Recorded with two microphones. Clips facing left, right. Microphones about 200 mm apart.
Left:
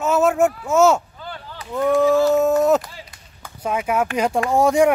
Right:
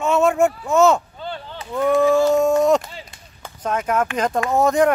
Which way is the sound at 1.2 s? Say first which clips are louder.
Right 4 dB; 25° right (ahead or behind).